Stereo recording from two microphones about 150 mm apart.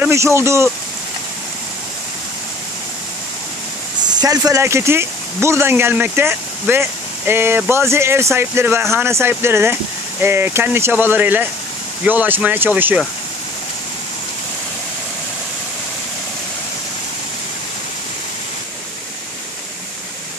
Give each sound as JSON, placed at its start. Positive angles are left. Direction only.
{"t": 0.0, "sound": "speech", "side_deg": -20}
{"t": 4.1, "sound": "speech", "side_deg": -25}